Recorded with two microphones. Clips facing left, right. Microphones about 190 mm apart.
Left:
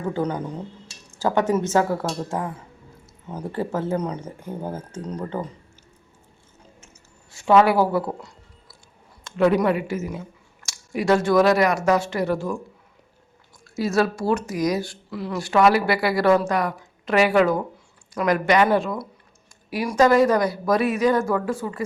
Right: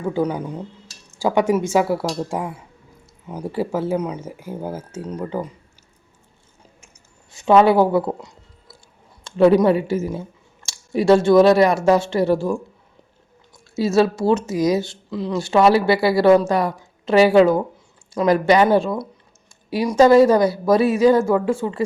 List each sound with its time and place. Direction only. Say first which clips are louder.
0.0 s speech: right 3 dB; 10° right (ahead or behind)
6.8 s a sound: left 1 dB; 20° right (ahead or behind)
9.2 s speech: right 5 dB; 30° right (ahead or behind)
13.7 s speech: right 4 dB; 25° right (ahead or behind)